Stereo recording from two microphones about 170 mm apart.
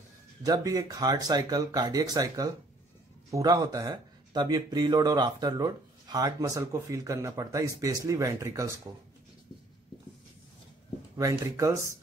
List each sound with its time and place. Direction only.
0.4 s speech: 20° right (ahead or behind)
11.1 s speech: 20° right (ahead or behind)